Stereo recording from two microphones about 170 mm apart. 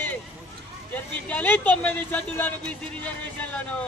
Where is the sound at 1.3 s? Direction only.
10° left (ahead or behind).